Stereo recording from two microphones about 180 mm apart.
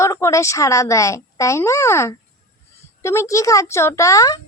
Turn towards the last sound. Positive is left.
turn(degrees=20)  # may be behind; listen again after turning